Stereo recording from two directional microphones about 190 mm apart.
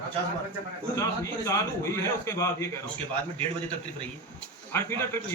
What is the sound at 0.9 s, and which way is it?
A man's voice, 15° left (ahead or behind).